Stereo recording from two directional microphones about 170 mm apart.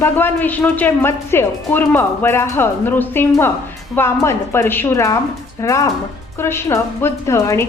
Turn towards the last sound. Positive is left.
turn(degrees=15)  # may be behind; listen again after turning